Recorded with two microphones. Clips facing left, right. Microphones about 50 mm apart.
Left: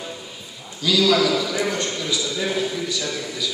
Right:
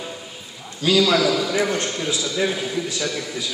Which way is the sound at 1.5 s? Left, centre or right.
Right.